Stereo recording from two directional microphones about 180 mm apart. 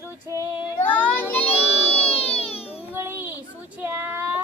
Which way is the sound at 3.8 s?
10° right (ahead or behind).